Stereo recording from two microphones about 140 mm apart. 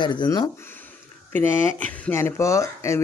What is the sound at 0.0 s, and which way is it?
Speech, 35° left (ahead or behind).